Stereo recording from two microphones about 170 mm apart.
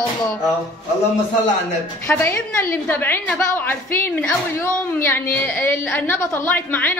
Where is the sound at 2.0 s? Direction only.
10° left (ahead or behind).